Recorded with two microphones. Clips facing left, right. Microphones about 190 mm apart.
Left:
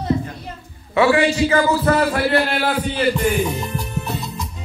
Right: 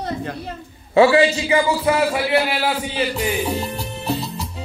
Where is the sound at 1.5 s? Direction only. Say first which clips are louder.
Left 1 dB; 10° right (ahead or behind).